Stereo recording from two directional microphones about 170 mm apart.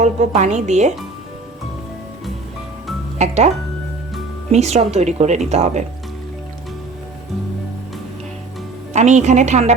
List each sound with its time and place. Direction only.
0.0 s speech: 45° right (ahead or behind)
3.2 s speech: 40° right (ahead or behind)
4.5 s speech: 40° right (ahead or behind)
8.9 s speech: 45° right (ahead or behind)